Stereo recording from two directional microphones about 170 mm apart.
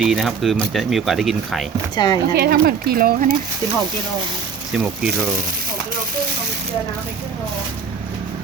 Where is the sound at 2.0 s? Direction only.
25° left (ahead or behind).